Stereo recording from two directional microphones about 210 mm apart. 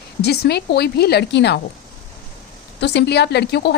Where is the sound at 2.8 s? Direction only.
55° left (ahead or behind).